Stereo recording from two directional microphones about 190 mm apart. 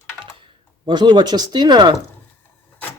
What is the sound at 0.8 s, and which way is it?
Speech, 25° right (ahead or behind).